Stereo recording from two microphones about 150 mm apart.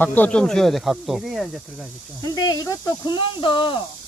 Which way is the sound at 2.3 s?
25° left (ahead or behind).